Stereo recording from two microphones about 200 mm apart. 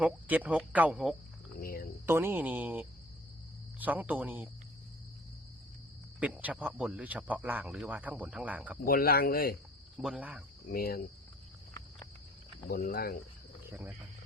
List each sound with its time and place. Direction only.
0.0 s speech: 5° right (ahead or behind)
1.6 s cricket: 45° left (ahead or behind)
2.0 s speech: 10° right (ahead or behind)
6.1 s speech: 5° right (ahead or behind)
8.8 s speech: 50° left (ahead or behind)
10.0 s speech: 5° right (ahead or behind)
10.7 s speech: 45° left (ahead or behind)
12.7 s speech: 45° left (ahead or behind)
13.7 s speech: 10° right (ahead or behind)